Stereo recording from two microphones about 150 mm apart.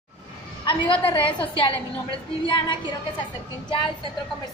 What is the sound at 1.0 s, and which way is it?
Speech, 35° left (ahead or behind).